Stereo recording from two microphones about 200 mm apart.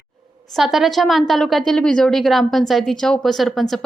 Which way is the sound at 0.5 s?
Centre (ahead or behind).